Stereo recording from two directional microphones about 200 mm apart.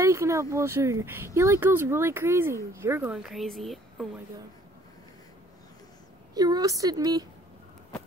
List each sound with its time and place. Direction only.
0.0 s speech: 15° right (ahead or behind); by 4.1 s centre (ahead or behind)
6.3 s a woman's voice: 20° right (ahead or behind)